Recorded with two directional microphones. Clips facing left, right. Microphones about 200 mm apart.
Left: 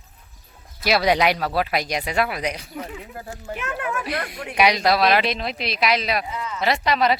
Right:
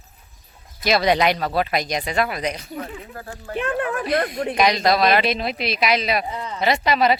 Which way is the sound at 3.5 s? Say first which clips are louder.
Right 5 dB; 30° right (ahead or behind).